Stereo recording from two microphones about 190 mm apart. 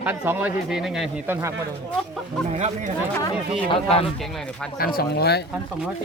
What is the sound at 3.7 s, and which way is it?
Speech, 30° left (ahead or behind).